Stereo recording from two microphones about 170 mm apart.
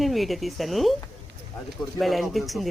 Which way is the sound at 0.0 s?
Centre (ahead or behind).